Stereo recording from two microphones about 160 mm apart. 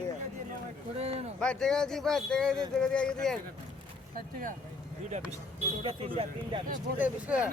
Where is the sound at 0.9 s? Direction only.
40° right (ahead or behind).